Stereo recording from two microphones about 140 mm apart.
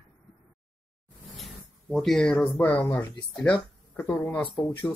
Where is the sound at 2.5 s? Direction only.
10° left (ahead or behind).